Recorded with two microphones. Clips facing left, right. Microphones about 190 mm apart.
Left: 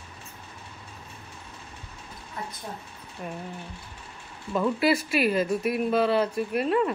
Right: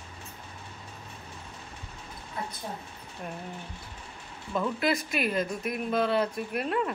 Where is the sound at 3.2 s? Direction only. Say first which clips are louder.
Left 3 dB; 5° left (ahead or behind).